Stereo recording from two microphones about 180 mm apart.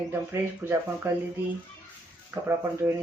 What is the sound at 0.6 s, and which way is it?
Speech, 15° right (ahead or behind).